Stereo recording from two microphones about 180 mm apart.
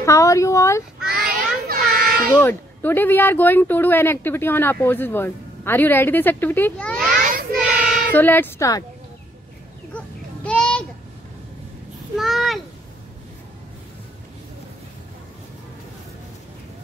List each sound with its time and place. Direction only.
0.0 s speech: 15° left (ahead or behind)
1.2 s children playing: 55° right (ahead or behind)
2.3 s speech: 10° left (ahead or behind)
7.2 s child singing: 45° right (ahead or behind)
8.1 s speech: 10° left (ahead or behind)
9.9 s babbling: 5° left (ahead or behind)
12.2 s a child's voice: centre (ahead or behind)